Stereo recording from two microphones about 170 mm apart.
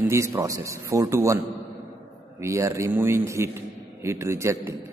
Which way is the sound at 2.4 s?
15° right (ahead or behind).